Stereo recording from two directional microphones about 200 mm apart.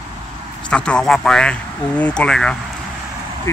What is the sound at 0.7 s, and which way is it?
Speech, 5° left (ahead or behind).